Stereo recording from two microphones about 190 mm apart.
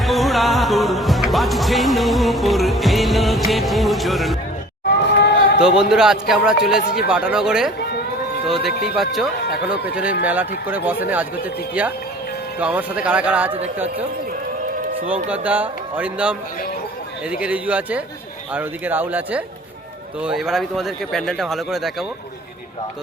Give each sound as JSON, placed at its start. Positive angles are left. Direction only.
{"t": 0.0, "sound": "music", "side_deg": 0}
{"t": 4.9, "sound": "a sound", "side_deg": 60}
{"t": 5.5, "sound": "speech", "side_deg": -5}
{"t": 15.0, "sound": "speech", "side_deg": -10}